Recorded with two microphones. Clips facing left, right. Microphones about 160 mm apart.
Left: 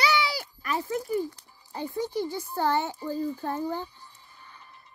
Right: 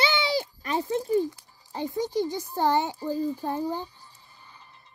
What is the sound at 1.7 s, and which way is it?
A child's voice, 15° right (ahead or behind).